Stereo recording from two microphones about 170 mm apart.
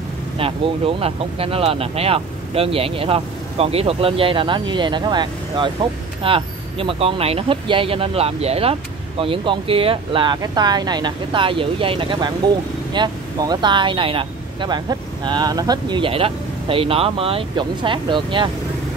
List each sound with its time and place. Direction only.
0.4 s speech: 35° right (ahead or behind)